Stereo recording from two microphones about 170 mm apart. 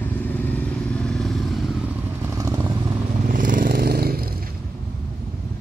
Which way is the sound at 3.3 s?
55° right (ahead or behind).